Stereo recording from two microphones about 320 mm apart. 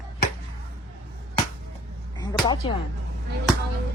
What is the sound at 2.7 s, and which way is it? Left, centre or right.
Speech, centre.